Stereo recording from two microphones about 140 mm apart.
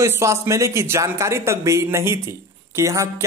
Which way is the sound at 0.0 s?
20° right (ahead or behind).